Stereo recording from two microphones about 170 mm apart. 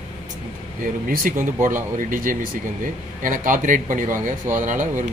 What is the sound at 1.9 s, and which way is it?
Speech, 50° right (ahead or behind).